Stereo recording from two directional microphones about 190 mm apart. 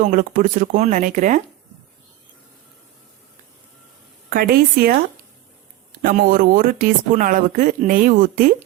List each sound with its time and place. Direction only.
0.0 s speech: 40° right (ahead or behind)
4.3 s speech: 55° right (ahead or behind)
6.0 s speech: 50° right (ahead or behind)